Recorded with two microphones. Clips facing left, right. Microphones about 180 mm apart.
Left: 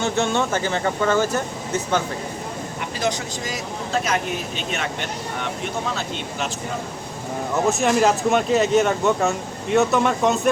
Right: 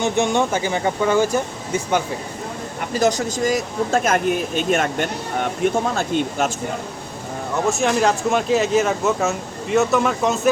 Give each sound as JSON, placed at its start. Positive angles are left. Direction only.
{"t": 0.0, "sound": "speech", "side_deg": -15}
{"t": 3.0, "sound": "speech", "side_deg": -45}
{"t": 7.5, "sound": "speech", "side_deg": 0}